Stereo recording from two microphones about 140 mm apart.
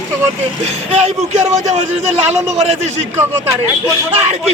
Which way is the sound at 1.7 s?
55° right (ahead or behind).